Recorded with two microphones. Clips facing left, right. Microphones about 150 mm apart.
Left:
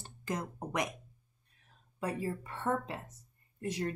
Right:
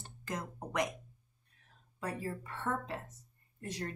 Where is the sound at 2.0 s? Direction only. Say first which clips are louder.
Left 3 dB; 15° left (ahead or behind).